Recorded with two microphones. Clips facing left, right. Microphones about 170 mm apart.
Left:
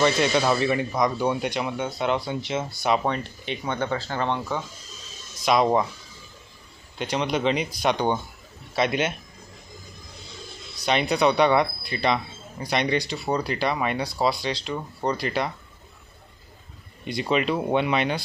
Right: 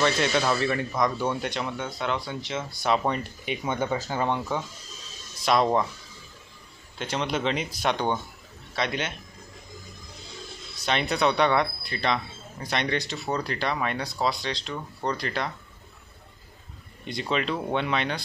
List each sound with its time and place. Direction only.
0.0 s speech: 5° left (ahead or behind)
2.8 s speech: 5° left (ahead or behind)
3.4 s speech: 10° right (ahead or behind); by 5.9 s 10° left (ahead or behind)
7.0 s speech: centre (ahead or behind)
10.9 s speech: 5° left (ahead or behind)
17.0 s speech: 5° left (ahead or behind)